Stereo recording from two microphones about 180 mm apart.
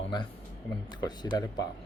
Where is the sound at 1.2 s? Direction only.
20° left (ahead or behind).